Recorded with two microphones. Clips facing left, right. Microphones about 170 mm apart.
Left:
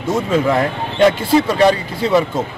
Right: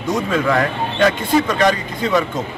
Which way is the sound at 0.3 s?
25° left (ahead or behind).